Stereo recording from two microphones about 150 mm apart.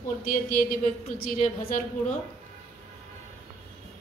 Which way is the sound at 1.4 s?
55° left (ahead or behind).